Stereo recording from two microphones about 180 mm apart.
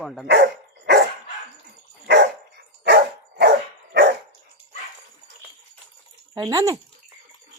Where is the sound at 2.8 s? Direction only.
60° right (ahead or behind).